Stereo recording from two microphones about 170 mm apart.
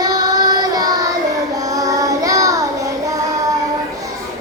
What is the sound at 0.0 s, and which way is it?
Child singing, 20° right (ahead or behind).